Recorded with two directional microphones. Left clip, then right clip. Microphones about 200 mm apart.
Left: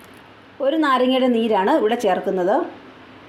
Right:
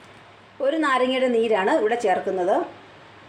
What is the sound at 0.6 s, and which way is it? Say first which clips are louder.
A woman's voice: left 3 dB; 35° left (ahead or behind).